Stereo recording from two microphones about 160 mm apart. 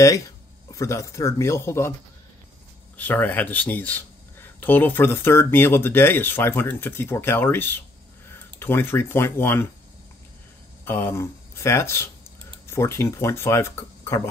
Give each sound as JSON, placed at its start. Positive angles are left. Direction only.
{"t": 0.7, "sound": "speech", "side_deg": 20}
{"t": 3.0, "sound": "speech", "side_deg": 10}
{"t": 10.9, "sound": "speech", "side_deg": 15}